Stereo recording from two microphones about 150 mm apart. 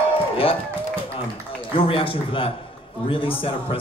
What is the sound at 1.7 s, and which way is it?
A man's voice, 35° left (ahead or behind).